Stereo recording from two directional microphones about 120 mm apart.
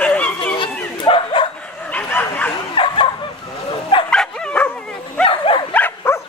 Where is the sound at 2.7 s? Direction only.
45° left (ahead or behind).